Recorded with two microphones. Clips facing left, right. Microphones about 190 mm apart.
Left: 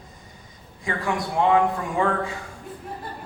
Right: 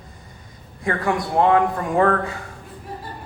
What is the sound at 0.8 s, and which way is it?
A man's voice, 55° right (ahead or behind).